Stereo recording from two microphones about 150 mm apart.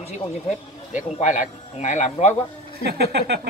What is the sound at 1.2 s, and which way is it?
Speech, 50° left (ahead or behind).